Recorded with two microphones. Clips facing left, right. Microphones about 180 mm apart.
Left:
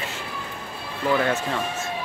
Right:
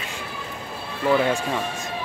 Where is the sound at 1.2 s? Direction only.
10° right (ahead or behind).